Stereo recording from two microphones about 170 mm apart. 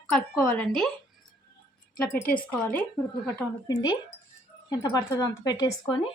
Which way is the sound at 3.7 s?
20° left (ahead or behind).